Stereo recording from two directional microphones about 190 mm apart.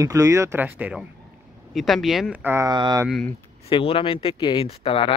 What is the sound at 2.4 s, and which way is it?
Speech, 15° right (ahead or behind).